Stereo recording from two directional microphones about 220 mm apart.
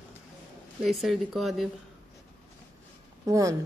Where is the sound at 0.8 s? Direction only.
Centre (ahead or behind).